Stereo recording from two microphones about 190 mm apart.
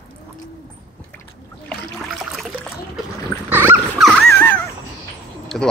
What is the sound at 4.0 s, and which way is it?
Dog, centre (ahead or behind).